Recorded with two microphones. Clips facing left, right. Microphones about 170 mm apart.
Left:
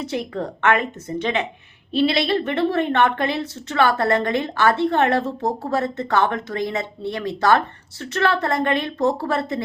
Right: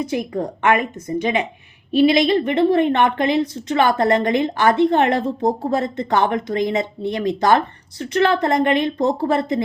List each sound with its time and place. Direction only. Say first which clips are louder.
0.0 s a woman's voice: right 3 dB; 10° right (ahead or behind)